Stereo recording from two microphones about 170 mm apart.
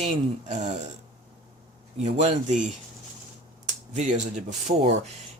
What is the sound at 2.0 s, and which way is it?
Speech, 40° right (ahead or behind).